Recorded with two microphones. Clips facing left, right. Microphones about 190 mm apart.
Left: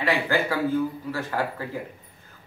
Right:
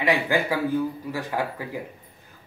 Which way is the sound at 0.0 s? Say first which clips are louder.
Right 1 dB; 15° right (ahead or behind).